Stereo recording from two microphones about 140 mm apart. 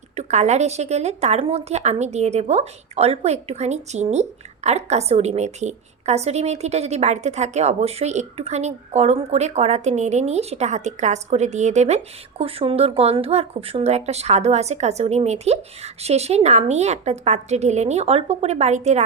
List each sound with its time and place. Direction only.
0.2 s a woman's voice: 55° right (ahead or behind)